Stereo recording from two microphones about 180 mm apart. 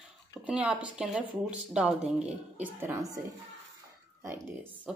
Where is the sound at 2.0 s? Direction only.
40° right (ahead or behind).